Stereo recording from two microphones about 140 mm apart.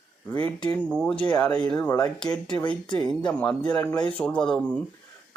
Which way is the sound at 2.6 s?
5° left (ahead or behind).